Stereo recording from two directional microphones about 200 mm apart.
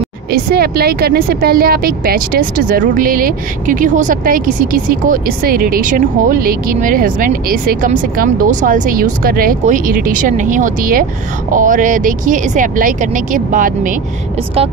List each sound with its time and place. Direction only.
0.3 s a woman's voice: 50° right (ahead or behind)